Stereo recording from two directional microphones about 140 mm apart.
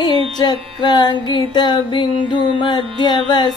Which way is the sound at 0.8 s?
30° left (ahead or behind).